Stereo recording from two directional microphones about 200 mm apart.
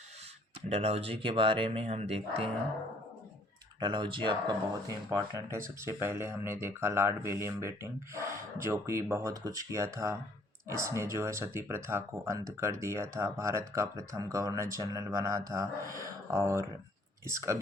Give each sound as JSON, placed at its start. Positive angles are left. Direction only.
{"t": 0.7, "sound": "speech", "side_deg": -30}
{"t": 3.8, "sound": "speech", "side_deg": -20}